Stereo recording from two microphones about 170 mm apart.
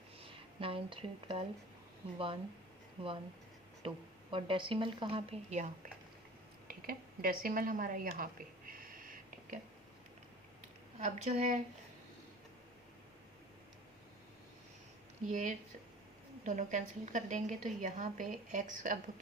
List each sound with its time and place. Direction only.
0.2 s speech: 30° right (ahead or behind)
6.7 s a sound: 55° right (ahead or behind)
11.0 s a woman's voice: 45° right (ahead or behind)
15.3 s a woman's voice: 45° right (ahead or behind)